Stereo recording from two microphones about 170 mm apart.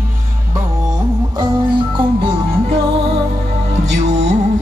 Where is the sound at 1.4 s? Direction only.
30° right (ahead or behind).